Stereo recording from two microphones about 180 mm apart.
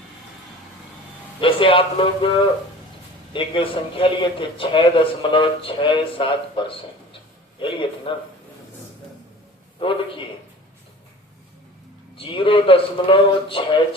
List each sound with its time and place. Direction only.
1.4 s a man's voice: 30° left (ahead or behind)
3.3 s a man's voice: 30° left (ahead or behind)
9.8 s a man's voice: 30° left (ahead or behind)
12.1 s a man's voice: 30° left (ahead or behind)